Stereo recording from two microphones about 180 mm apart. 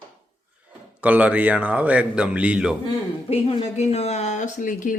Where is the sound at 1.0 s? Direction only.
10° right (ahead or behind).